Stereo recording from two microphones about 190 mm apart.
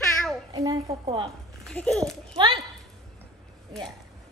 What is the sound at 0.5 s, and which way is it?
Speech, 20° right (ahead or behind).